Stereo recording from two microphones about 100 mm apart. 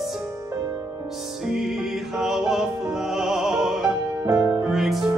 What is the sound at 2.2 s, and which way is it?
Music, 5° right (ahead or behind).